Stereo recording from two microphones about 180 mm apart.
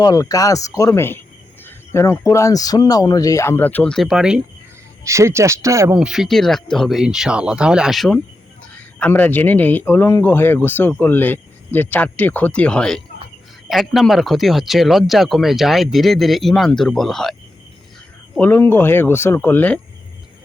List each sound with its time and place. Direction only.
0.0 s speech: 20° left (ahead or behind); by 4.4 s 5° right (ahead or behind)
5.0 s speech: 15° right (ahead or behind)
5.9 s speech: 5° right (ahead or behind)
18.3 s speech: 10° left (ahead or behind)